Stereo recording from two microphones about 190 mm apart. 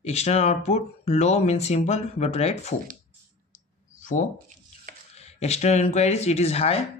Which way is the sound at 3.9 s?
40° left (ahead or behind).